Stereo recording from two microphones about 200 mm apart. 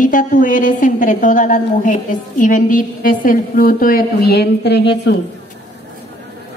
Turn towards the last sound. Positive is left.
turn(degrees=55)  # may be behind; listen again after turning